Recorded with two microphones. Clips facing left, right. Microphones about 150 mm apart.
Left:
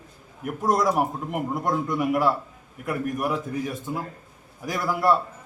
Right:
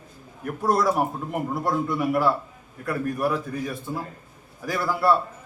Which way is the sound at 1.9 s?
15° left (ahead or behind).